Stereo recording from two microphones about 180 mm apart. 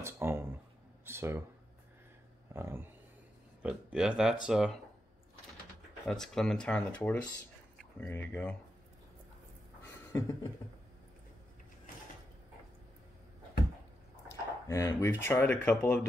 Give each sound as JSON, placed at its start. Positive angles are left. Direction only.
{"t": 0.0, "sound": "speech", "side_deg": -15}
{"t": 2.5, "sound": "speech", "side_deg": -15}
{"t": 6.0, "sound": "speech", "side_deg": 0}
{"t": 9.8, "sound": "a sound", "side_deg": 15}
{"t": 14.7, "sound": "speech", "side_deg": 15}